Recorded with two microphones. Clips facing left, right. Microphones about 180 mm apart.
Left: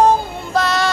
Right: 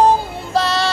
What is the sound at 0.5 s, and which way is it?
Music, 30° right (ahead or behind).